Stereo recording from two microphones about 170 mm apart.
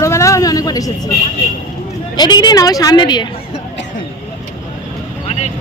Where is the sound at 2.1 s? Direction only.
25° left (ahead or behind).